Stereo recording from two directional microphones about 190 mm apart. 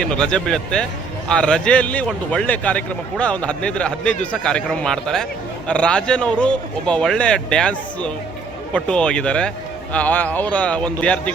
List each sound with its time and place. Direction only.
0.0 s a man's voice: 5° left (ahead or behind)